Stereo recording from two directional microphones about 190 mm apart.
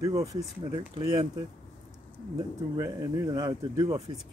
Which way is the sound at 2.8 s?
20° right (ahead or behind).